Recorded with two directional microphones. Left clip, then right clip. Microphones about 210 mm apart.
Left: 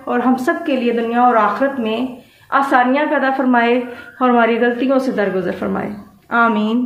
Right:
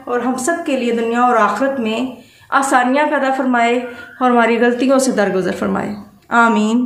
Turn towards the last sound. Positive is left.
turn(degrees=-10)  # may be behind; listen again after turning